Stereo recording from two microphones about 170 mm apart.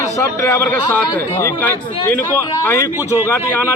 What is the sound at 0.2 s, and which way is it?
A man's voice, 15° left (ahead or behind).